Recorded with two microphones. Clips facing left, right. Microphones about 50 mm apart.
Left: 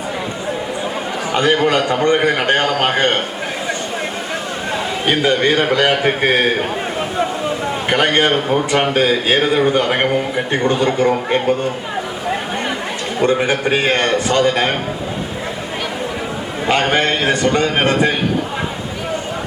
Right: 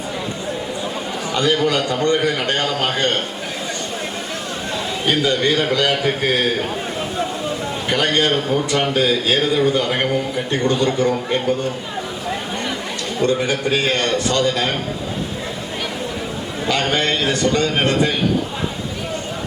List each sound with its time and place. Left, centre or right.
1.3 s a man's voice: left
4.7 s a man's voice: left
7.9 s a man's voice: left
11.1 s a man's voice: left
13.1 s a man's voice: left
16.6 s a man's voice: left